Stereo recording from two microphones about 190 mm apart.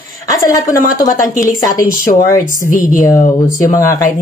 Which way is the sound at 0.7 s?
45° left (ahead or behind).